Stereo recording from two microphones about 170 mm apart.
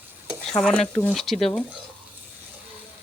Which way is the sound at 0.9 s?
5° left (ahead or behind).